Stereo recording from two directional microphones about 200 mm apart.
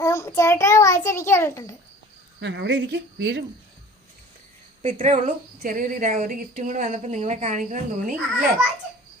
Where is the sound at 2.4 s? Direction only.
60° right (ahead or behind).